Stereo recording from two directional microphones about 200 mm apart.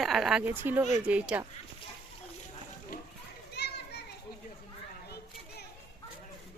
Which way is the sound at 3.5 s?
55° left (ahead or behind).